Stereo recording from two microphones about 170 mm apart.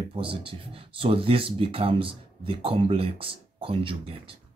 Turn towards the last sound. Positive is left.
turn(degrees=-30)  # may be behind; listen again after turning